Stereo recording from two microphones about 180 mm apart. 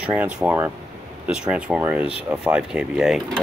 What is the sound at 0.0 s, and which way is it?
Speech, 10° right (ahead or behind).